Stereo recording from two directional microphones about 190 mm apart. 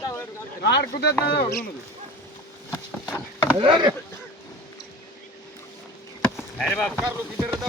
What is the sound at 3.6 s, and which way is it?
Speech, 25° right (ahead or behind).